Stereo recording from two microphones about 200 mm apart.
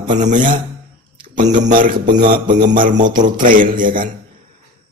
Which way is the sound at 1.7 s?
45° right (ahead or behind).